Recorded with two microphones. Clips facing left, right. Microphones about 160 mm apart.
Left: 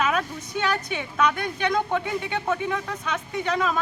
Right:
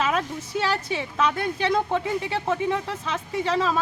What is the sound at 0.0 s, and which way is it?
Speech, 30° right (ahead or behind).